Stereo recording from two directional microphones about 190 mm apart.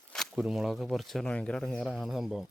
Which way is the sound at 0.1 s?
Centre (ahead or behind).